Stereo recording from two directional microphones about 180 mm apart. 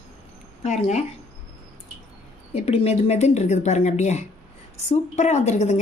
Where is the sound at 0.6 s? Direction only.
40° left (ahead or behind).